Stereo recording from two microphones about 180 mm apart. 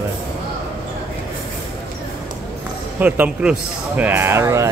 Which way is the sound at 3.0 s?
5° right (ahead or behind).